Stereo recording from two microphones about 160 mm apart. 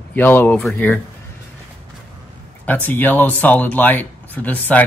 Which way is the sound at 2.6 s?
10° left (ahead or behind).